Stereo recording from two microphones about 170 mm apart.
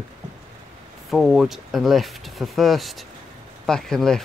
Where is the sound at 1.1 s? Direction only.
Centre (ahead or behind).